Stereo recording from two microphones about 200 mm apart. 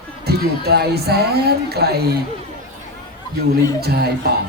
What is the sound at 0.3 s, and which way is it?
Speech, 55° right (ahead or behind).